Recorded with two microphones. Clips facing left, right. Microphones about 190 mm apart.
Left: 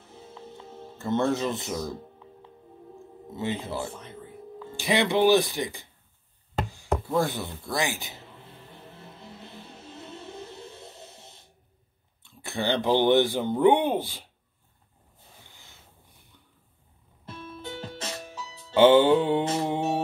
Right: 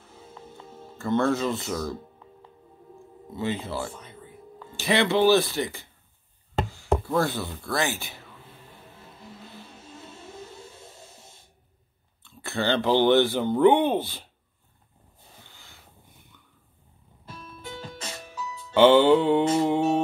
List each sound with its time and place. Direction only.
0.9 s speech: 20° left (ahead or behind)
3.3 s speech: 20° left (ahead or behind)
7.1 s speech: 15° left (ahead or behind)
12.4 s speech: 15° left (ahead or behind)
15.5 s boat: 20° left (ahead or behind)
17.6 s music: 25° left (ahead or behind)